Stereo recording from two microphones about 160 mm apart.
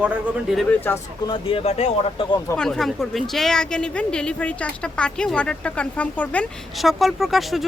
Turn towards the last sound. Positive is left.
turn(degrees=0)  # may be behind; listen again after turning